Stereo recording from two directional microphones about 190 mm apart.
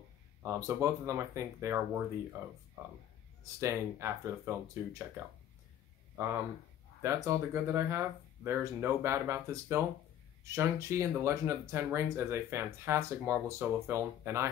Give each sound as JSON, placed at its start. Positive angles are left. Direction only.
{"t": 0.4, "sound": "speech", "side_deg": -15}
{"t": 6.1, "sound": "speech", "side_deg": -15}